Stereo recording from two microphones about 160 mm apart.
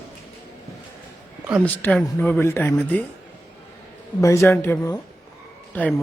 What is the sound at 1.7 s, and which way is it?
Speech, 10° left (ahead or behind).